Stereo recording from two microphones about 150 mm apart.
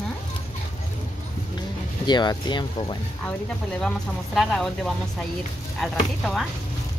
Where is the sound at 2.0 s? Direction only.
30° left (ahead or behind).